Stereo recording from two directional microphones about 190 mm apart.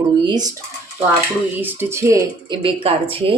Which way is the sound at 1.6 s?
10° right (ahead or behind).